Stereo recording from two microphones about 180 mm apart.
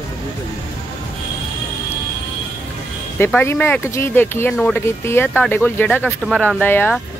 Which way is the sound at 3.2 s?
10° left (ahead or behind).